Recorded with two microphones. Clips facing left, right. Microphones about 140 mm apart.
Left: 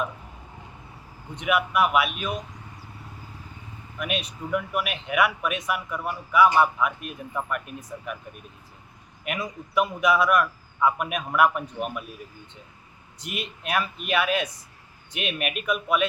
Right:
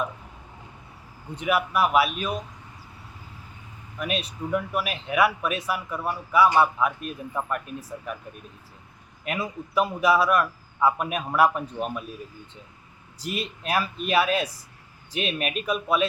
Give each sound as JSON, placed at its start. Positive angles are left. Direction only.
{"t": 1.4, "sound": "speech", "side_deg": -35}
{"t": 4.0, "sound": "speech", "side_deg": -30}
{"t": 9.2, "sound": "speech", "side_deg": -30}
{"t": 13.1, "sound": "speech", "side_deg": -35}